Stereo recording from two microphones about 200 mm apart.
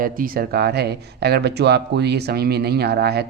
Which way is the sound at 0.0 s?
45° right (ahead or behind).